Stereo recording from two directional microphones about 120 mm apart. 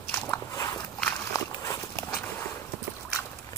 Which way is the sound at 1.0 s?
15° left (ahead or behind).